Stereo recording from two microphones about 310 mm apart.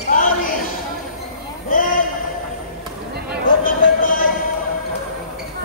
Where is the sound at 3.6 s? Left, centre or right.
Left.